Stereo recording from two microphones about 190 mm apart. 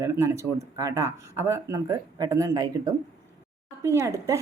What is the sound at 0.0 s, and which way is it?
Speech, 15° right (ahead or behind).